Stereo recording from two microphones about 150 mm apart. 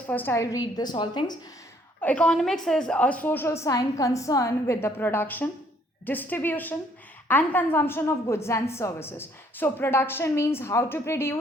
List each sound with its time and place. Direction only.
0.1 s a woman's voice: 15° left (ahead or behind); by 1.4 s 30° left (ahead or behind)
2.0 s a woman's voice: 10° left (ahead or behind)